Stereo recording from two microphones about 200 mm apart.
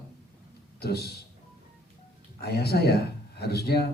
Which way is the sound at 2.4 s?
55° left (ahead or behind).